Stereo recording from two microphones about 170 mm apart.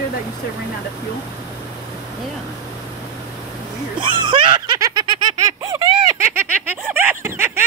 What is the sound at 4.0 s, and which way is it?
Snicker, 30° right (ahead or behind).